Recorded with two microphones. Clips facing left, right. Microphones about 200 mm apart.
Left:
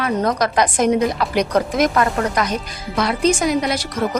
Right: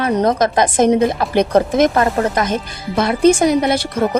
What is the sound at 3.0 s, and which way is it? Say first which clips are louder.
Speech: right 5 dB; 55° right (ahead or behind).